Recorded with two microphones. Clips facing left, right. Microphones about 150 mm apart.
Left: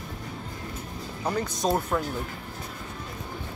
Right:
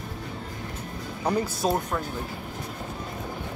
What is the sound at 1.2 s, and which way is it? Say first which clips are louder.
Speech: right 2 dB; 10° right (ahead or behind).